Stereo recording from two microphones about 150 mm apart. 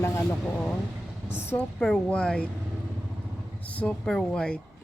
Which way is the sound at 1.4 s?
15° left (ahead or behind).